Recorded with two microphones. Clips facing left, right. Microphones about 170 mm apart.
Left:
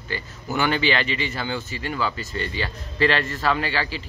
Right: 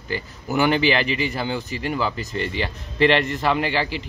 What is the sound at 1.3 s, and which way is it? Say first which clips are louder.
Speech: right 3 dB; 10° right (ahead or behind).